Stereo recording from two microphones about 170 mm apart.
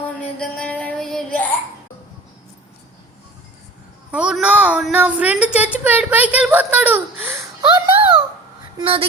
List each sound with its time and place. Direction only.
0.3 s music: 5° left (ahead or behind)
4.1 s a woman's voice: 5° right (ahead or behind)
7.6 s a sound: 30° right (ahead or behind)